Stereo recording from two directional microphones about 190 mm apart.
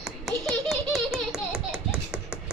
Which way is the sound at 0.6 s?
Centre (ahead or behind).